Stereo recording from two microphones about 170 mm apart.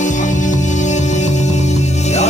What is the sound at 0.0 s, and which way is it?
Music, 45° left (ahead or behind).